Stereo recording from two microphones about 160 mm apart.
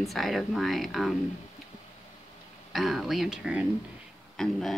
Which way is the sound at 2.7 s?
Centre (ahead or behind).